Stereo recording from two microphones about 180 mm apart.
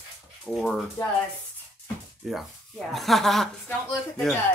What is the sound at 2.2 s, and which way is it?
Speech, centre (ahead or behind).